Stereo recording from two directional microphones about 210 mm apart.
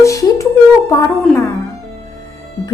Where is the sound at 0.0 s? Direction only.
15° left (ahead or behind).